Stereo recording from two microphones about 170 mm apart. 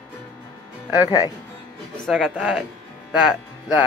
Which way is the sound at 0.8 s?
10° right (ahead or behind).